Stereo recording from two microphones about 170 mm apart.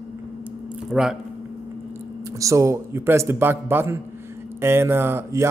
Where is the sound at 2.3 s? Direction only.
20° right (ahead or behind).